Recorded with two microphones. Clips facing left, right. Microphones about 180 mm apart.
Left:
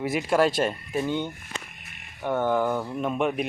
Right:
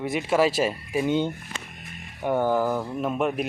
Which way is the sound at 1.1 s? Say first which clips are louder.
Right 4 dB; 20° right (ahead or behind).